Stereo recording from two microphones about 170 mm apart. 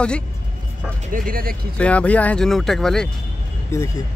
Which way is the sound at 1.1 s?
55° right (ahead or behind).